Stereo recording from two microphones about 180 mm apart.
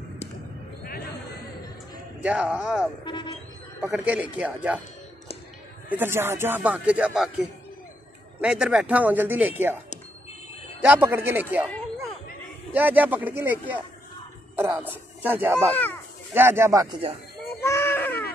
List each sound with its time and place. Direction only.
2.2 s speech: 5° right (ahead or behind)
3.1 s a sound: 25° left (ahead or behind)
3.8 s speech: 5° right (ahead or behind)
5.9 s speech: 10° right (ahead or behind)
10.8 s speech: 10° right (ahead or behind)
12.7 s speech: 10° right (ahead or behind)
15.7 s speech: 10° left (ahead or behind)
16.3 s speech: 15° right (ahead or behind)
17.6 s a sound: 15° left (ahead or behind)